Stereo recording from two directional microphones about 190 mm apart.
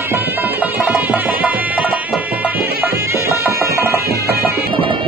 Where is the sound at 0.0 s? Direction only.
10° right (ahead or behind).